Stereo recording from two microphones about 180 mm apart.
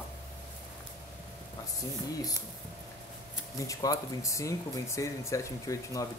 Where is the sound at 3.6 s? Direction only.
20° left (ahead or behind).